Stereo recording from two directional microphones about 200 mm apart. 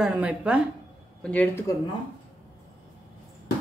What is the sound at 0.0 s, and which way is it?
Speech, 5° right (ahead or behind).